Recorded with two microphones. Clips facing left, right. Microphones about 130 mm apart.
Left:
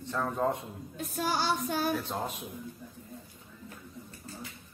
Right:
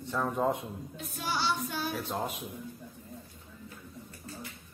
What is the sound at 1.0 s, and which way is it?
Child singing, 45° left (ahead or behind).